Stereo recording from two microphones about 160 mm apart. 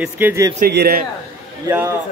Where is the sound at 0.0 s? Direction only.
15° right (ahead or behind).